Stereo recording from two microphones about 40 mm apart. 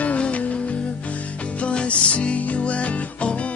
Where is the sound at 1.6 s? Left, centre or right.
Left.